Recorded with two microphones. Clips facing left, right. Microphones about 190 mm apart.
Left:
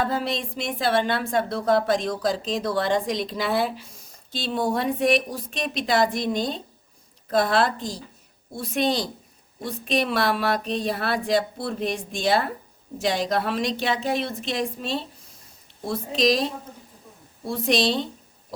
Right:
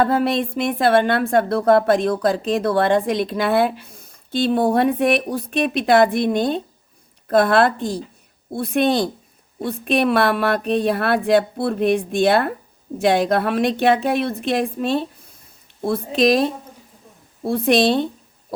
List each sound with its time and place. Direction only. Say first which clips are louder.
0.0 s speech: right 8 dB; 60° right (ahead or behind)